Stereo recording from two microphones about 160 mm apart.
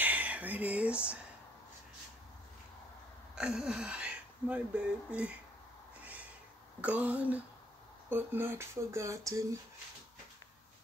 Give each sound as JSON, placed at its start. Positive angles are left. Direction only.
{"t": 0.0, "sound": "speech", "side_deg": -10}
{"t": 3.3, "sound": "speech", "side_deg": -5}
{"t": 6.8, "sound": "speech", "side_deg": -10}